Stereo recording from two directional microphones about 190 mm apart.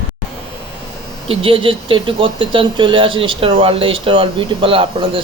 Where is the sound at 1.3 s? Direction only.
30° right (ahead or behind).